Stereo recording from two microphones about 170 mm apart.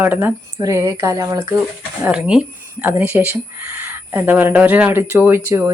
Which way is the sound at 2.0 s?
5° right (ahead or behind).